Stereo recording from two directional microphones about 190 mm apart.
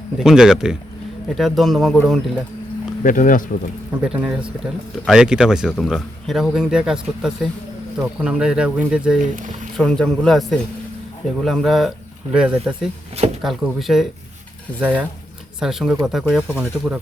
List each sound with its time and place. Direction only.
0.2 s speech: centre (ahead or behind)
3.0 s speech: 45° left (ahead or behind)
4.0 s speech: 5° right (ahead or behind)